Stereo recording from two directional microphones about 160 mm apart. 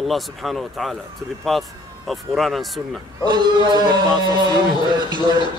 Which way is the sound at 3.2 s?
30° right (ahead or behind).